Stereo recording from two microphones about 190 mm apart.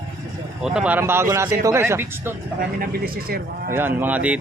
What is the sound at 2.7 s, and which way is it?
Speech, 50° right (ahead or behind).